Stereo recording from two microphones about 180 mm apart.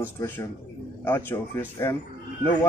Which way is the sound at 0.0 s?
15° left (ahead or behind).